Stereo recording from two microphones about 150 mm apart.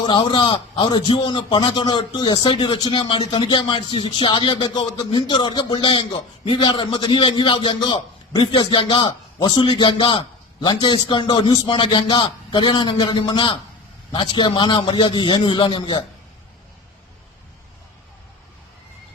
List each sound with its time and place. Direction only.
0.0 s a man's voice: 30° left (ahead or behind)